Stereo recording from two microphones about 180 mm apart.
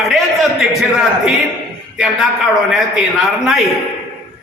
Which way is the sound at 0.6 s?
Centre (ahead or behind).